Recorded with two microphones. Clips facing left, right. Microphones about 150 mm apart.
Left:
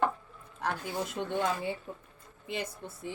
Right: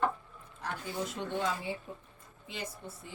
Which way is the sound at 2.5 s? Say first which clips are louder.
Left 5 dB; 65° left (ahead or behind).